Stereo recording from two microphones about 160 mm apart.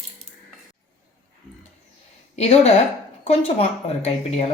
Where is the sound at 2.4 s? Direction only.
40° left (ahead or behind).